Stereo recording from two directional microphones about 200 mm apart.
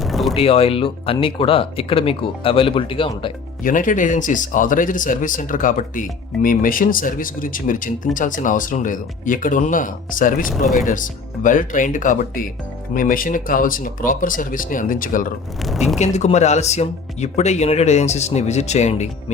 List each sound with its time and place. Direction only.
0.0 s a sound: centre (ahead or behind)
0.3 s speech: 30° left (ahead or behind)
3.6 s speech: 40° left (ahead or behind)
15.6 s speech: centre (ahead or behind)
16.0 s speech: 35° left (ahead or behind)